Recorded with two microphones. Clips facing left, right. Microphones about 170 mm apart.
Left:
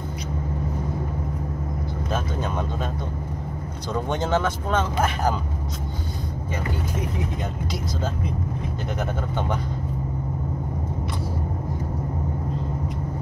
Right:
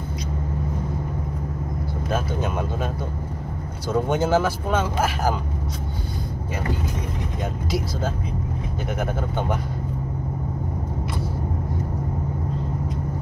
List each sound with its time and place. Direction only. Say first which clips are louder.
2.1 s speech: right 2 dB; 10° right (ahead or behind)
3.9 s speech: right 4 dB; 5° right (ahead or behind)
9.0 s speech: right 2 dB; 5° right (ahead or behind)